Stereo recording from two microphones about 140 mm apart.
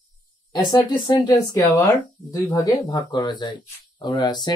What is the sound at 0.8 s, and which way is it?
Speech, 30° left (ahead or behind).